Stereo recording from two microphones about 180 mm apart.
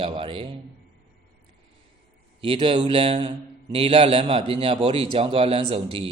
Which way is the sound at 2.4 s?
30° right (ahead or behind).